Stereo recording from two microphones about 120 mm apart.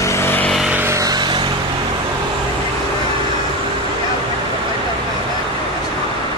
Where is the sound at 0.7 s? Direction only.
20° right (ahead or behind).